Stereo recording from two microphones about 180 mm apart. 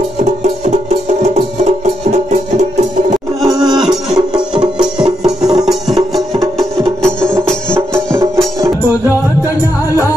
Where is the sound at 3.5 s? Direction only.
Centre (ahead or behind).